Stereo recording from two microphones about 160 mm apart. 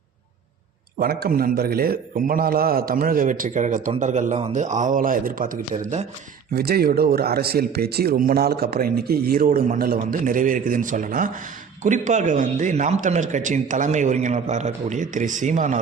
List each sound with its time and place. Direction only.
0.9 s a man's voice: 70° right (ahead or behind); by 6.1 s 45° right (ahead or behind)
6.5 s a man's voice: 75° right (ahead or behind); by 15.8 s 50° right (ahead or behind)